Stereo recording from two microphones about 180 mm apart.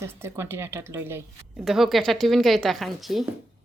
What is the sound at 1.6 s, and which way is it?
Speech, centre (ahead or behind).